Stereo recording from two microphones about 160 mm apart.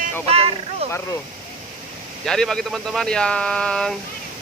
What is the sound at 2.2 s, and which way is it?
Speech, 5° left (ahead or behind).